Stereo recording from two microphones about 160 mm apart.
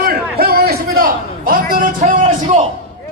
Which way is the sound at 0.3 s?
75° right (ahead or behind).